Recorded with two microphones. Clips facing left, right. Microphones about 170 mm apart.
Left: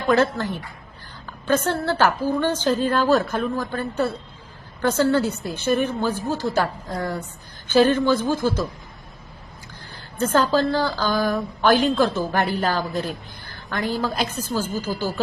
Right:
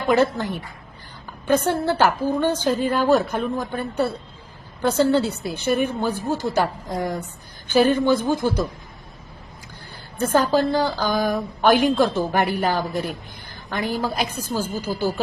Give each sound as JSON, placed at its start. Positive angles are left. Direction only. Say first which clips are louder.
{"t": 0.1, "sound": "a woman's voice", "louder": "even", "side_deg": -15}
{"t": 10.2, "sound": "a woman's voice", "louder": "right 1 dB", "side_deg": -10}